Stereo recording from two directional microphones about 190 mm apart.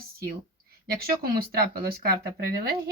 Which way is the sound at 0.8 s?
50° right (ahead or behind).